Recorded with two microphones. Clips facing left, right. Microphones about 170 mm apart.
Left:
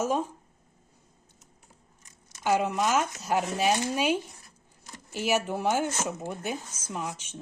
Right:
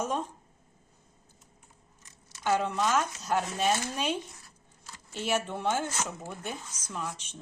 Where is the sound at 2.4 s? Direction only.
10° left (ahead or behind).